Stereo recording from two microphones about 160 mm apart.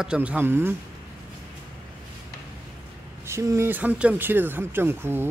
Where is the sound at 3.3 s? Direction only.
15° right (ahead or behind).